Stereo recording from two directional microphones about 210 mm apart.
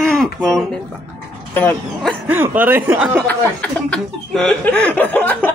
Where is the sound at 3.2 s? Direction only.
5° left (ahead or behind).